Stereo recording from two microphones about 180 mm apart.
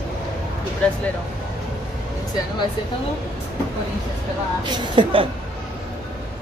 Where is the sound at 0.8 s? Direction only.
5° left (ahead or behind).